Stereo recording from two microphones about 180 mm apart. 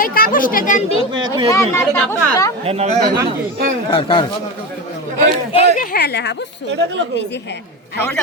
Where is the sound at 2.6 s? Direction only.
35° right (ahead or behind).